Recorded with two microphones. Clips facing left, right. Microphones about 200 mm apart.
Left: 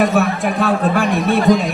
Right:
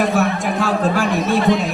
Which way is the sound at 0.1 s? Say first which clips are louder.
Left 1 dB; 60° left (ahead or behind).